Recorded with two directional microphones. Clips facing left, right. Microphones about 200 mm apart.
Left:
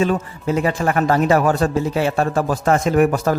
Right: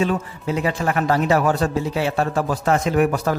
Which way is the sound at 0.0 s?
45° left (ahead or behind).